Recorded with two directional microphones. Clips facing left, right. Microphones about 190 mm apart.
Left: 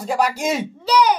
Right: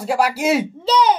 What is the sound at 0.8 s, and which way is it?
Speech, 25° right (ahead or behind).